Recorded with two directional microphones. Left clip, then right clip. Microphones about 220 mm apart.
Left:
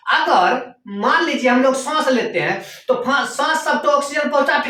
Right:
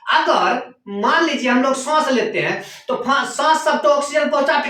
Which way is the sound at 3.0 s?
Centre (ahead or behind).